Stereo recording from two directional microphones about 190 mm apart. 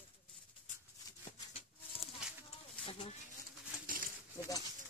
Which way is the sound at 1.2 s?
30° left (ahead or behind).